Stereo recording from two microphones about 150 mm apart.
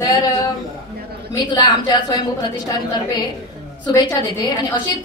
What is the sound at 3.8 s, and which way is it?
A woman's voice, 30° left (ahead or behind).